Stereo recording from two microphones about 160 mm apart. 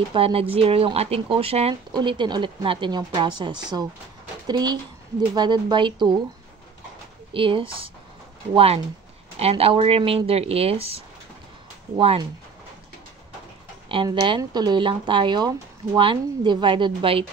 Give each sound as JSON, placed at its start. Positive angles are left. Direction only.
{"t": 0.1, "sound": "speech", "side_deg": -35}
{"t": 7.3, "sound": "speech", "side_deg": -35}
{"t": 14.0, "sound": "speech", "side_deg": -25}